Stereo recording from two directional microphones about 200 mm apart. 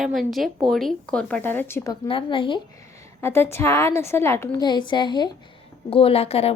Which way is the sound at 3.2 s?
10° left (ahead or behind).